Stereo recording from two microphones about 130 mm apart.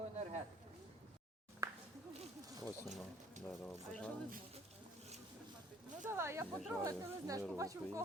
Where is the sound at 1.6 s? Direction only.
25° right (ahead or behind).